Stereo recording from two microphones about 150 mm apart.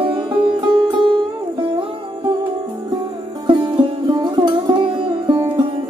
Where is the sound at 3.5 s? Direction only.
30° right (ahead or behind).